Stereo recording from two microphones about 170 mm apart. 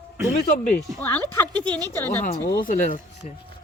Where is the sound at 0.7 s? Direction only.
10° left (ahead or behind).